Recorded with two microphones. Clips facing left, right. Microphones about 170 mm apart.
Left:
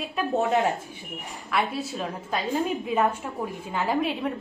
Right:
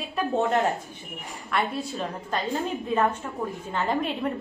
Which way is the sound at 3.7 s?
5° left (ahead or behind).